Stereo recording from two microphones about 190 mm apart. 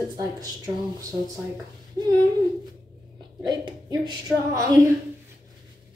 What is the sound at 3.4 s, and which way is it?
A woman's voice, 20° right (ahead or behind).